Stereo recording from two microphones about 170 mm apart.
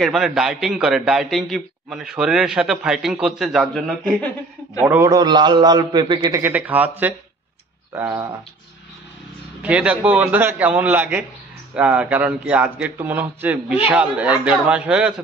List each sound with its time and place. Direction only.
0.0 s a man's voice: centre (ahead or behind)
4.8 s a man's voice: 15° right (ahead or behind)
6.4 s a man's voice: 10° right (ahead or behind)
9.6 s a man's voice: 5° right (ahead or behind)